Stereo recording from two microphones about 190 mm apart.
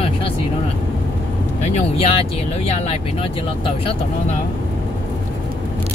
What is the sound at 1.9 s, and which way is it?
Speech, 30° left (ahead or behind).